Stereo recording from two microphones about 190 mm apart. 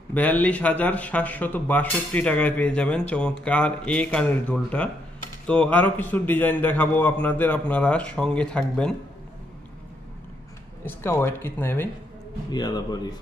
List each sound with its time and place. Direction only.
0.1 s a man's voice: 10° left (ahead or behind)
11.0 s a man's voice: 10° left (ahead or behind)